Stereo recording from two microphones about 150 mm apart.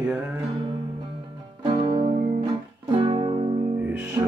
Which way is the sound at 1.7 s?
30° right (ahead or behind).